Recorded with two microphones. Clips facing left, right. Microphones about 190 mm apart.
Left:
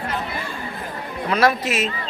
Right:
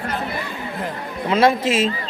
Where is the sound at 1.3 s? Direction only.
25° right (ahead or behind).